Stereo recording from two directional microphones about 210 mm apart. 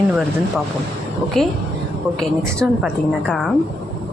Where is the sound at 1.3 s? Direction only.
Centre (ahead or behind).